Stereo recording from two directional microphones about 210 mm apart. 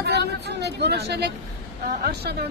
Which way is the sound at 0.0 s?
50° right (ahead or behind).